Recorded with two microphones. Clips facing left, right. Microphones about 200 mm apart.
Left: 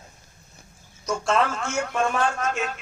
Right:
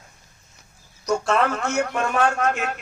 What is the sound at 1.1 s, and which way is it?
A man's voice, 65° right (ahead or behind).